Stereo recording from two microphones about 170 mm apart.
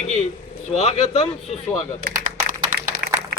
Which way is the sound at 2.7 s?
60° right (ahead or behind).